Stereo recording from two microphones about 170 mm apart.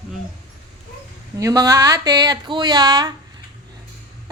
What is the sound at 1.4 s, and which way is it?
Speech, 20° right (ahead or behind).